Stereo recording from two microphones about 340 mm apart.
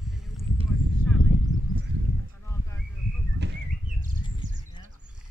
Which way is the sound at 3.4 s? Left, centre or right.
Right.